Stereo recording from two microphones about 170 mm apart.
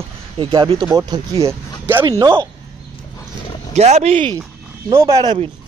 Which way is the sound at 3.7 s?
40° right (ahead or behind).